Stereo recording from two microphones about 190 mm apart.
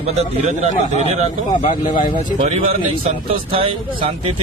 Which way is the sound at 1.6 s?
45° left (ahead or behind).